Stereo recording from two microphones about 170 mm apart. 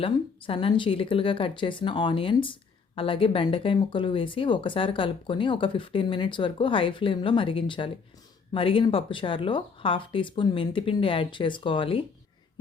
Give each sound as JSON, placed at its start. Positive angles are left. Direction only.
{"t": 0.0, "sound": "speech", "side_deg": 35}